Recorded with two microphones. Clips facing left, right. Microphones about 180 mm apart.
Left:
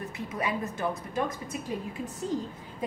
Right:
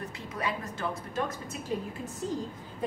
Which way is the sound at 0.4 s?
20° left (ahead or behind).